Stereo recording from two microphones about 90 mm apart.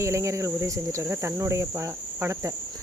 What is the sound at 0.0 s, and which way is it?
Speech, 35° right (ahead or behind).